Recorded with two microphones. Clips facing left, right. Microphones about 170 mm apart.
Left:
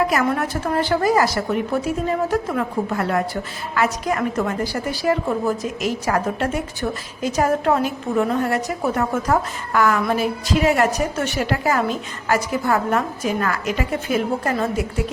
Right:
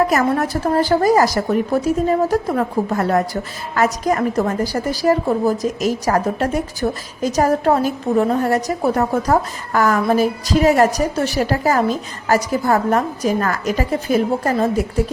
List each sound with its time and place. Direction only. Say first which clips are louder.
0.1 s a woman's voice: right 3 dB; 40° right (ahead or behind)